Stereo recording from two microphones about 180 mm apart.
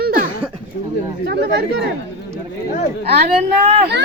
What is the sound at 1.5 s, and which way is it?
Speech, 65° right (ahead or behind).